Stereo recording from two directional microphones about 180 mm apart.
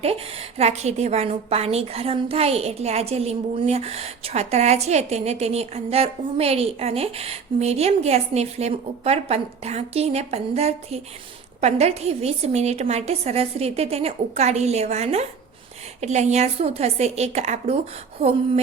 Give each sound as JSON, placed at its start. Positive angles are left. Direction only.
{"t": 0.0, "sound": "a woman's voice", "side_deg": -35}